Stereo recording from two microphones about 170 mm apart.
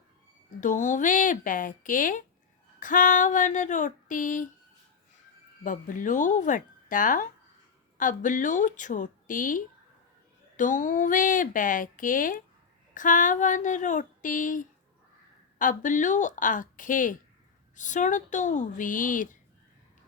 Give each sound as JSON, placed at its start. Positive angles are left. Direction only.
{"t": 0.6, "sound": "speech", "side_deg": 50}
{"t": 5.6, "sound": "speech", "side_deg": 50}